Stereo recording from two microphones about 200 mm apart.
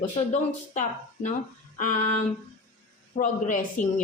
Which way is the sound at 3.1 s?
40° left (ahead or behind).